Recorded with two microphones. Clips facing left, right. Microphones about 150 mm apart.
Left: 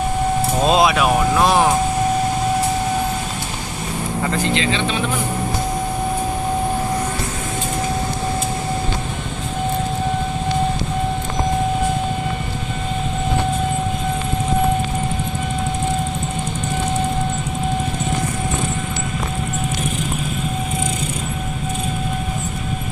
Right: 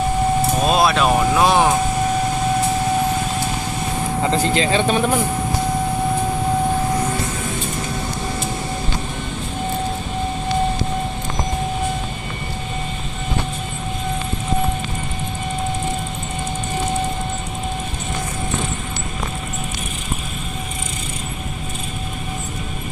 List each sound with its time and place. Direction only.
0.6 s music: 20° left (ahead or behind)
0.9 s vehicle: 5° left (ahead or behind)
4.6 s speech: 45° right (ahead or behind)